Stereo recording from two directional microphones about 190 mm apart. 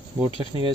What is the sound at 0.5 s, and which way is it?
Speech, 20° right (ahead or behind).